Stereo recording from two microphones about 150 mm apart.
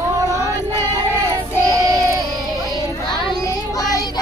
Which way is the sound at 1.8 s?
20° right (ahead or behind).